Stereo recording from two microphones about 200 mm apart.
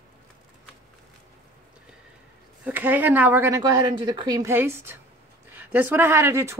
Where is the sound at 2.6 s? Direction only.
10° right (ahead or behind).